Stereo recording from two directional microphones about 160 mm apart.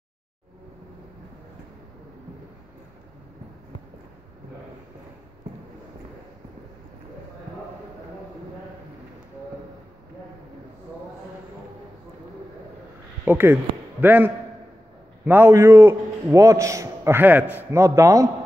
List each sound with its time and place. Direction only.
13.2 s a man's voice: 10° right (ahead or behind)